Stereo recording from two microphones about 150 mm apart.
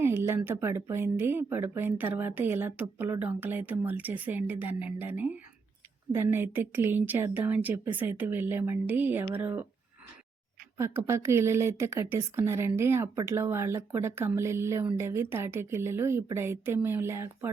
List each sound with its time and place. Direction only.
0.0 s speech: 15° right (ahead or behind)
10.8 s speech: 20° right (ahead or behind)